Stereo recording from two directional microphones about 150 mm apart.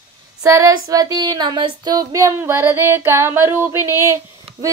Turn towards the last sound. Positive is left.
turn(degrees=-20)  # may be behind; listen again after turning